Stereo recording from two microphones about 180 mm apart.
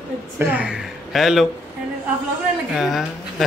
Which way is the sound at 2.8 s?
Centre (ahead or behind).